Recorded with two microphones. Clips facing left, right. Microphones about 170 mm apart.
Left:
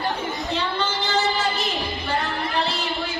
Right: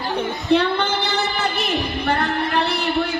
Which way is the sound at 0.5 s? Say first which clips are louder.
Right 10 dB; 65° right (ahead or behind).